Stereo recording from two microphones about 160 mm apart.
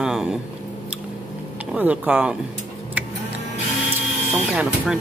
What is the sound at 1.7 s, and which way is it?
Speech, 10° right (ahead or behind).